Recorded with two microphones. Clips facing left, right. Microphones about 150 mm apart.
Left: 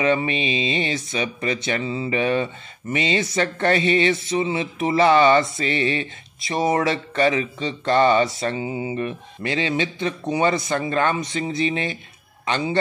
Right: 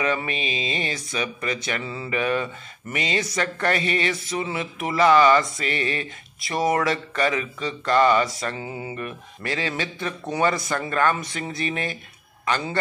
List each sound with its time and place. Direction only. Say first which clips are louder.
0.0 s a man's voice: left 5 dB; 25° left (ahead or behind)